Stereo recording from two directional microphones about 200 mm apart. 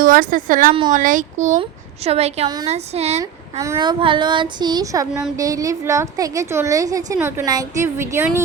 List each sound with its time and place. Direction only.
0.0 s a woman's voice: 45° right (ahead or behind)
0.7 s speech: 25° right (ahead or behind)
0.9 s speech: 40° right (ahead or behind)
3.2 s a woman's voice: 15° right (ahead or behind)